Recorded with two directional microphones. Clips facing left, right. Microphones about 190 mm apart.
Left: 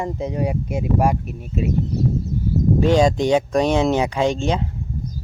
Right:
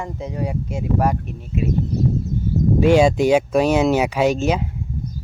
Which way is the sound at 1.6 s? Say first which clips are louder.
Even; 35° left (ahead or behind).